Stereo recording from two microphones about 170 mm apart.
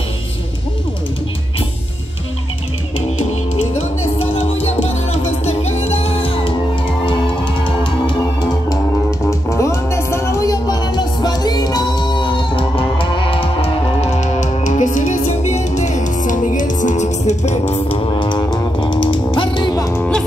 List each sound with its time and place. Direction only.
4.3 s music: 35° left (ahead or behind)
7.8 s music: 25° left (ahead or behind)
9.5 s music: 15° left (ahead or behind)
20.0 s music: 5° left (ahead or behind)